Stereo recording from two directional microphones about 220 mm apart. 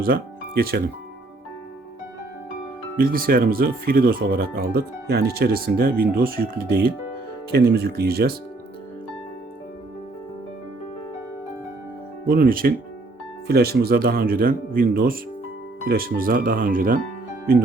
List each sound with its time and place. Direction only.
0.0 s speech: 45° right (ahead or behind)
3.0 s speech: 40° right (ahead or behind)
12.3 s speech: 40° right (ahead or behind)